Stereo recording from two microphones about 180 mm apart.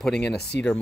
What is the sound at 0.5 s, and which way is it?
Speech, 70° left (ahead or behind).